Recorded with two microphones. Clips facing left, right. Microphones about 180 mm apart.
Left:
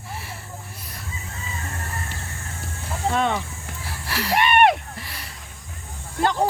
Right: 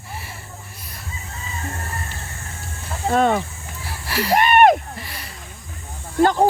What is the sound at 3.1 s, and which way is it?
Speech, 45° right (ahead or behind).